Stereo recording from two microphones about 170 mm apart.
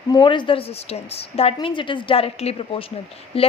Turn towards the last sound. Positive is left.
turn(degrees=35)  # may be behind; listen again after turning